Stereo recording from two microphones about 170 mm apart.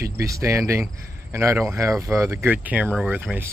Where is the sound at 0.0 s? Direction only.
20° right (ahead or behind).